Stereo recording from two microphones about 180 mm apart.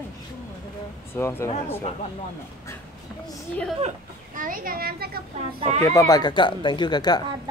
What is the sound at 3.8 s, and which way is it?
Speech, 45° right (ahead or behind).